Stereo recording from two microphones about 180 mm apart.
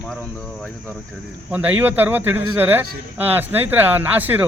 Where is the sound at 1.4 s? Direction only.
10° right (ahead or behind).